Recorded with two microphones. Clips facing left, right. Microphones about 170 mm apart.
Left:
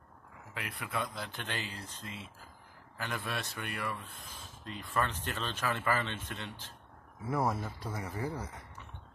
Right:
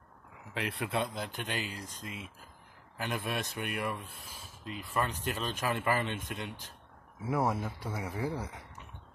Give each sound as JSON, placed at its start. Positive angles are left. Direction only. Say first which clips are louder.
{"t": 0.6, "sound": "speech", "louder": "right 5 dB", "side_deg": -30}